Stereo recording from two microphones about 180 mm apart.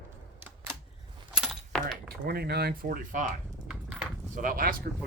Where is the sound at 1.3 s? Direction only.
Centre (ahead or behind).